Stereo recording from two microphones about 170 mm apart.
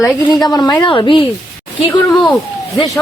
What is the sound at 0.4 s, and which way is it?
Speech, 25° left (ahead or behind).